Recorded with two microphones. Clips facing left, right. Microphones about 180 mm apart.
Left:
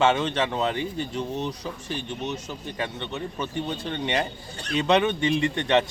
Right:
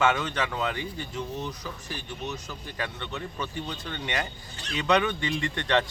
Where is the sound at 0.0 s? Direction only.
30° left (ahead or behind).